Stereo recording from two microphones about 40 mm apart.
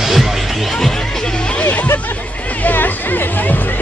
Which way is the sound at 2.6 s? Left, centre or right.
Left.